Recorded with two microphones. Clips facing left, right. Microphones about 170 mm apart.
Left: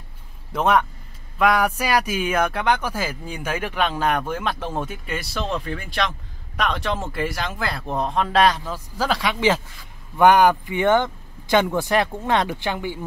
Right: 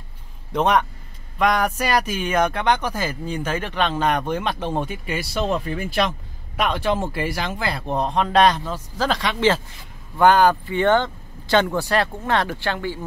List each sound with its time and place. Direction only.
0.5 s speech: 5° left (ahead or behind)